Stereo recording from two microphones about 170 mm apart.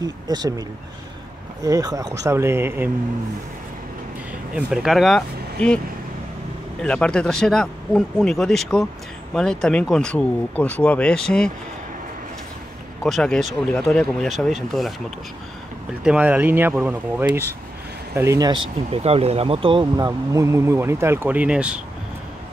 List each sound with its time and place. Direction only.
0.0 s speech: 20° right (ahead or behind)
4.6 s speech: 5° right (ahead or behind)
6.8 s speech: 5° left (ahead or behind)
13.0 s speech: 5° left (ahead or behind)